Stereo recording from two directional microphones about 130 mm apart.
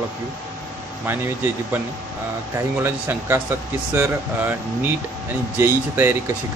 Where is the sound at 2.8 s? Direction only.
20° right (ahead or behind).